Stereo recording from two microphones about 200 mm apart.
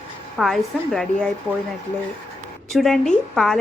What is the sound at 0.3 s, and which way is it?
Speech, centre (ahead or behind).